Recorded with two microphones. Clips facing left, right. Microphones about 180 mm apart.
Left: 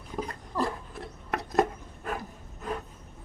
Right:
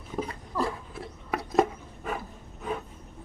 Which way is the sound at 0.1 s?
5° right (ahead or behind).